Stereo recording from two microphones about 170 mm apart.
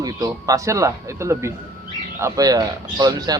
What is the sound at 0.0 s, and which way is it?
Speech, 20° right (ahead or behind).